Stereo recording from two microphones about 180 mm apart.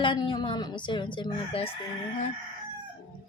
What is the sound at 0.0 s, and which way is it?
Speech, 25° left (ahead or behind).